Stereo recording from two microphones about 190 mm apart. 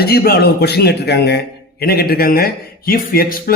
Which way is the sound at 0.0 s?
55° left (ahead or behind).